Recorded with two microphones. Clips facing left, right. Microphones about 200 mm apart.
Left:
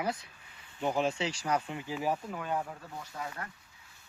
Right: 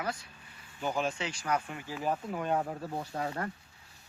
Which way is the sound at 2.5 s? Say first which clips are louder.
Right 4 dB; 40° right (ahead or behind).